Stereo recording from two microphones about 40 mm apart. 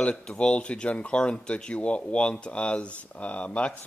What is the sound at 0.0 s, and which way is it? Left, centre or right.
Speech, centre.